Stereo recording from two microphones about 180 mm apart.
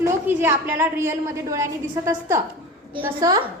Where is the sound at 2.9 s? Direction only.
20° right (ahead or behind).